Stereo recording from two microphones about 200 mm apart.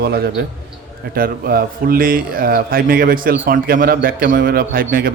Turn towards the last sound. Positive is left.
turn(degrees=-45)  # may be behind; listen again after turning